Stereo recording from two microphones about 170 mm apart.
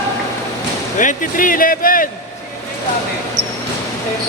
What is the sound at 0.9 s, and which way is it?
Speech, 50° left (ahead or behind).